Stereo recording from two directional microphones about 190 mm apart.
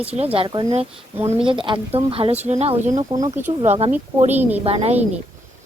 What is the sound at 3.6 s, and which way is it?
A woman's voice, 35° right (ahead or behind).